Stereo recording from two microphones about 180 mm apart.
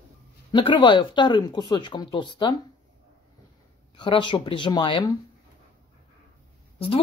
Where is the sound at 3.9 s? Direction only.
25° left (ahead or behind).